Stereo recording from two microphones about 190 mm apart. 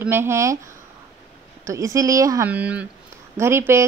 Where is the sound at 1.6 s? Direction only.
15° right (ahead or behind).